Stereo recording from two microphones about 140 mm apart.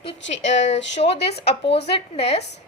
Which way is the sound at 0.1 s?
60° left (ahead or behind).